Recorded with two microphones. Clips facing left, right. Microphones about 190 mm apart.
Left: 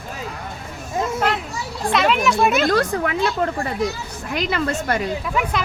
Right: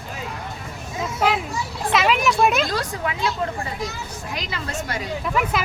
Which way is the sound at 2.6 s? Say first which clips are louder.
Left 6 dB; 60° left (ahead or behind).